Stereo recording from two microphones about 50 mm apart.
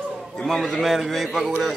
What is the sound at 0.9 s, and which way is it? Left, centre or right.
Speech, centre.